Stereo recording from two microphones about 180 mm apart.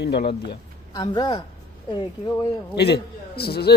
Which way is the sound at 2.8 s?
65° left (ahead or behind).